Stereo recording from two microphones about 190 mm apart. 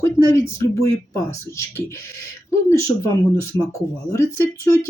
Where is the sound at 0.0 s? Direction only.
15° left (ahead or behind).